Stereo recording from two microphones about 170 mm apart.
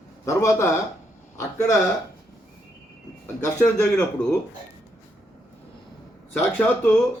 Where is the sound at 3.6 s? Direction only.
5° left (ahead or behind).